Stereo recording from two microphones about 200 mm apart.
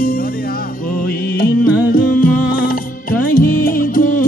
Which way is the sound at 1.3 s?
45° left (ahead or behind).